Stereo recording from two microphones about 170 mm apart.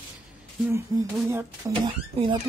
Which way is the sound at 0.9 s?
20° right (ahead or behind).